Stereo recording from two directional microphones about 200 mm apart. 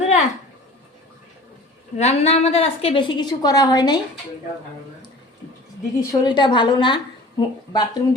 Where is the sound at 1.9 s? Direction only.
30° left (ahead or behind).